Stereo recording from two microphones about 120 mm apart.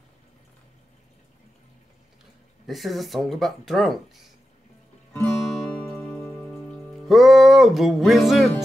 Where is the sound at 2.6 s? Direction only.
Centre (ahead or behind).